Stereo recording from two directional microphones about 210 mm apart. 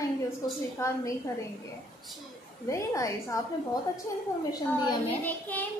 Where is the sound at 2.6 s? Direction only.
15° left (ahead or behind).